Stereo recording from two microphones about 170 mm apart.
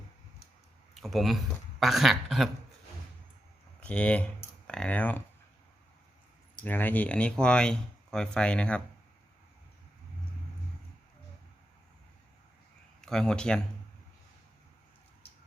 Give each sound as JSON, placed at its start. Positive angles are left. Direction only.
{"t": 0.9, "sound": "speech", "side_deg": 0}
{"t": 3.8, "sound": "speech", "side_deg": 5}
{"t": 6.7, "sound": "speech", "side_deg": 10}
{"t": 13.0, "sound": "speech", "side_deg": 5}